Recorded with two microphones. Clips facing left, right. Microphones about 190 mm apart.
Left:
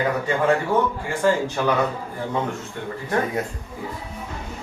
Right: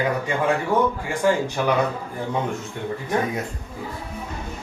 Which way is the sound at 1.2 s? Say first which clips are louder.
Even; 15° right (ahead or behind).